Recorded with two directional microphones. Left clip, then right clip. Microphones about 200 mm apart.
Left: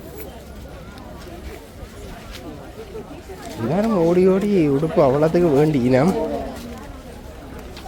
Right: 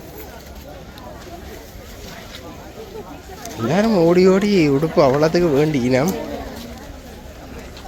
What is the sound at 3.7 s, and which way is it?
Speech, centre (ahead or behind).